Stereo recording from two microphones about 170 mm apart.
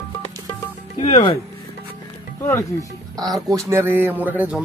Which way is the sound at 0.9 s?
35° left (ahead or behind).